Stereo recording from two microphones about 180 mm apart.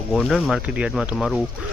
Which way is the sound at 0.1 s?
5° left (ahead or behind).